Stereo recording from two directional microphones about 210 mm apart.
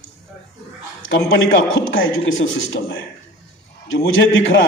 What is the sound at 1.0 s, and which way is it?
A man's voice, 65° left (ahead or behind).